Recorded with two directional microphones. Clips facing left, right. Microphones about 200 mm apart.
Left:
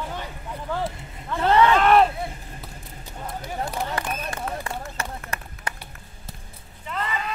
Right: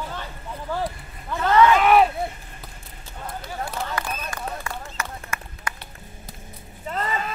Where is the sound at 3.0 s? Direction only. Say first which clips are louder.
Left 1 dB; 15° left (ahead or behind).